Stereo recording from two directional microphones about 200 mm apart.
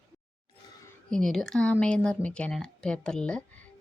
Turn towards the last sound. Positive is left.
turn(degrees=5)  # may be behind; listen again after turning